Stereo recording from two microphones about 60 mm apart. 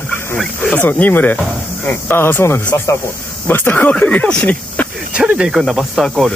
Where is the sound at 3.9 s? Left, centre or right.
Left.